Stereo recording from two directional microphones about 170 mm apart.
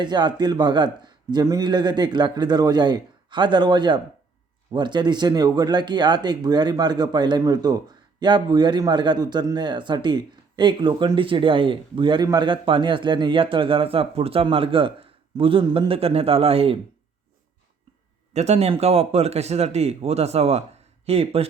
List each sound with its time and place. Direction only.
0.0 s a man's voice: 25° right (ahead or behind)
18.3 s speech: 40° right (ahead or behind)